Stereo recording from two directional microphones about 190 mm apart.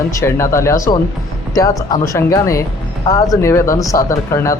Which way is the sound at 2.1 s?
15° left (ahead or behind).